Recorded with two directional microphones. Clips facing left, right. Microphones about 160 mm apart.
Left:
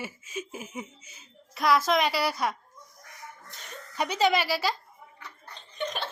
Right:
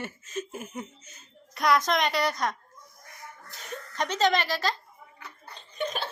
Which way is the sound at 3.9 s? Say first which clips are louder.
Even; 10° left (ahead or behind).